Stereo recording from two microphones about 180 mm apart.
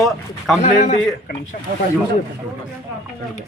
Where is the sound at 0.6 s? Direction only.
40° left (ahead or behind).